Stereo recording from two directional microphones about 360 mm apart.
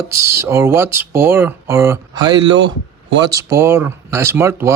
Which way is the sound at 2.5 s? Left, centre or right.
Right.